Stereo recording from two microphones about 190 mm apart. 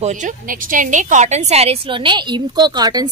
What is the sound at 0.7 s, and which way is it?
A woman's voice, 45° right (ahead or behind).